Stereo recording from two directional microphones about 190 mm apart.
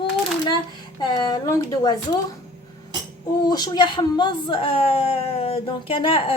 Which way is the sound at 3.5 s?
20° left (ahead or behind).